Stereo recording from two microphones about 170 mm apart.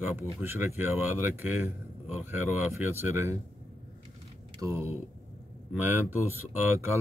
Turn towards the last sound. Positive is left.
turn(degrees=-15)  # may be behind; listen again after turning